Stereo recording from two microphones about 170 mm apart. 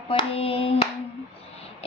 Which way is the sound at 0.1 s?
35° left (ahead or behind).